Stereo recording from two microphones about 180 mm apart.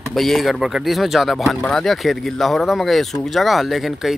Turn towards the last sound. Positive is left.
turn(degrees=0)  # may be behind; listen again after turning